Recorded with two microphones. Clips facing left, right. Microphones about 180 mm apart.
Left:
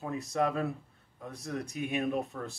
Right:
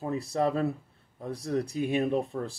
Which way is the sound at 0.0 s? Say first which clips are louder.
Right 3 dB; 35° right (ahead or behind).